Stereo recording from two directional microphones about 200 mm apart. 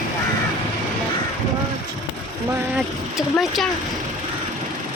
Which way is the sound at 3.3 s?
Centre (ahead or behind).